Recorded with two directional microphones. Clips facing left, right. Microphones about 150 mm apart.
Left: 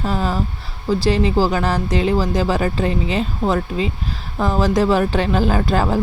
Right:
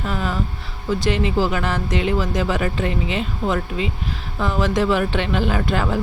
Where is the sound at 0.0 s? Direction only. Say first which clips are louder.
Left 3 dB; 35° left (ahead or behind).